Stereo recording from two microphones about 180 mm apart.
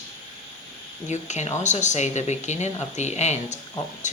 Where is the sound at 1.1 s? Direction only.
40° left (ahead or behind).